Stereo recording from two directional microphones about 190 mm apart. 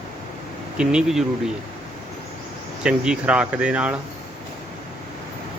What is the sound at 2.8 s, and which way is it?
Speech, 5° right (ahead or behind).